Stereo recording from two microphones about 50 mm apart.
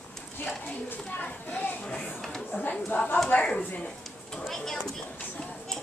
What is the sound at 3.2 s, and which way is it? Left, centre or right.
Speech, left.